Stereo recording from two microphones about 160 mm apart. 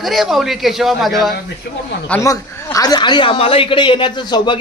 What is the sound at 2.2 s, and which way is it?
Speech, 20° left (ahead or behind).